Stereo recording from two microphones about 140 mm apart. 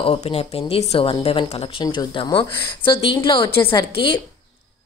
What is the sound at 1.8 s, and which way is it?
A woman's voice, 30° left (ahead or behind).